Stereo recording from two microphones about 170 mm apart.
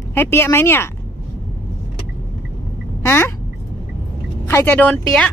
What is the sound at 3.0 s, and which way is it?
Speech, 15° left (ahead or behind).